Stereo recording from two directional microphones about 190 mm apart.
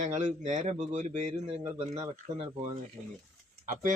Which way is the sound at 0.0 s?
40° right (ahead or behind).